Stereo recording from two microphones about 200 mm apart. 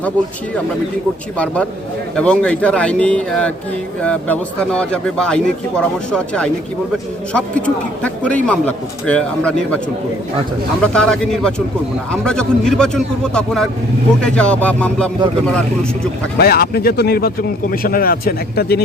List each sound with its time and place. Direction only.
2.1 s a man's voice: 5° left (ahead or behind)
16.4 s speech: 50° left (ahead or behind)